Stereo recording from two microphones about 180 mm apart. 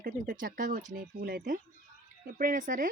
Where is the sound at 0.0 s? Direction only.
50° right (ahead or behind).